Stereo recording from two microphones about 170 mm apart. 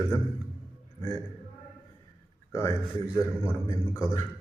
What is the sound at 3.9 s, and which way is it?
Speech, 15° left (ahead or behind).